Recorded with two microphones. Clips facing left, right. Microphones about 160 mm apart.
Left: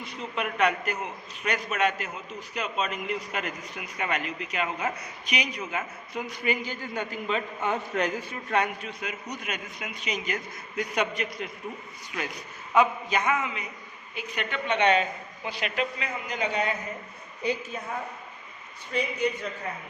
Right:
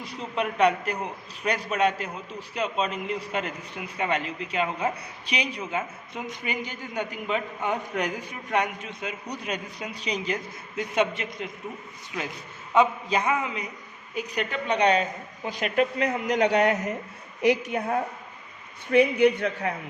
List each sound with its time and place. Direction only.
0.0 s a man's voice: 35° right (ahead or behind); by 19.7 s 70° right (ahead or behind)